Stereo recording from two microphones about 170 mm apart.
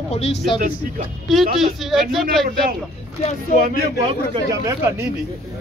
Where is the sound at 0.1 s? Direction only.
40° left (ahead or behind).